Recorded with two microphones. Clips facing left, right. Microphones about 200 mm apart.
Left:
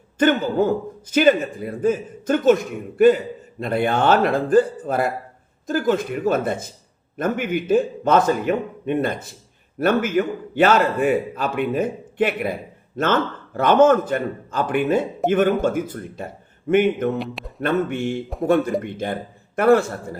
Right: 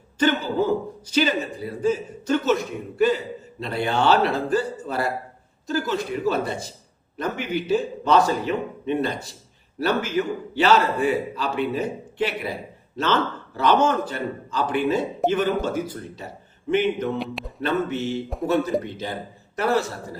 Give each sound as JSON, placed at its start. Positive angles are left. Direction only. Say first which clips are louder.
{"t": 0.2, "sound": "a man's voice", "louder": "left 4 dB", "side_deg": 50}
{"t": 3.6, "sound": "a man's voice", "louder": "left 3 dB", "side_deg": 50}
{"t": 17.2, "sound": "speech", "louder": "left 1 dB", "side_deg": 0}
{"t": 17.6, "sound": "a man's voice", "louder": "left 3 dB", "side_deg": 55}